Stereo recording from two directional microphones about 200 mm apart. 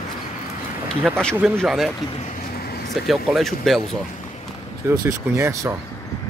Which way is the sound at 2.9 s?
Centre (ahead or behind).